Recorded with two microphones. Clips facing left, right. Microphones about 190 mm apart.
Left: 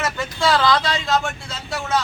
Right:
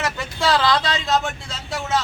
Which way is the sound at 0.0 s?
Centre (ahead or behind).